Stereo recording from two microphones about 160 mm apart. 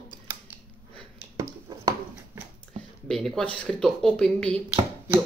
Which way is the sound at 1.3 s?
25° right (ahead or behind).